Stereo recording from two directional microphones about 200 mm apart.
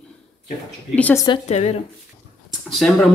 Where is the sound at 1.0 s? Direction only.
10° left (ahead or behind).